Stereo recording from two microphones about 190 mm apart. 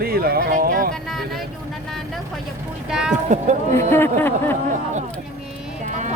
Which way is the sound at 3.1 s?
40° right (ahead or behind).